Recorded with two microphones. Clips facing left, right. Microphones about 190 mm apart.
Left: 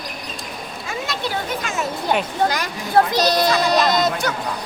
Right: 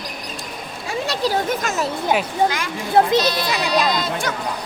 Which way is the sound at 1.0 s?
35° right (ahead or behind).